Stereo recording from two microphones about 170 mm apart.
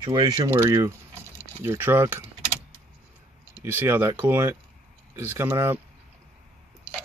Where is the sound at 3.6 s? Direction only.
10° right (ahead or behind).